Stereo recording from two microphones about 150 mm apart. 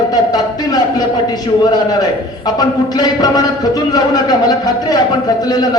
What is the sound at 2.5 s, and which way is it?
Speech, 25° left (ahead or behind).